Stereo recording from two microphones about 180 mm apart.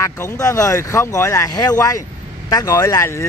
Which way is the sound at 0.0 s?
15° left (ahead or behind).